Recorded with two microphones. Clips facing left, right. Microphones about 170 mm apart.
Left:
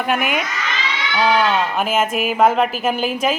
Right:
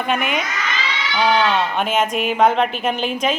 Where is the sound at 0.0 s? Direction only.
5° left (ahead or behind).